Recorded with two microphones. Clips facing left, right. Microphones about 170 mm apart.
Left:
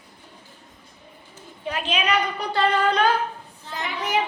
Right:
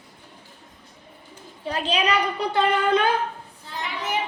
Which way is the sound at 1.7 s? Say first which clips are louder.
Right 1 dB; 35° right (ahead or behind).